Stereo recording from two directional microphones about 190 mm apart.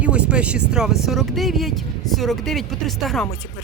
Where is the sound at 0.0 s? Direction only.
5° right (ahead or behind).